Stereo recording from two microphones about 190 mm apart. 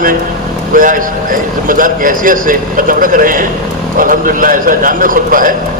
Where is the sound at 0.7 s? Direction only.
45° right (ahead or behind).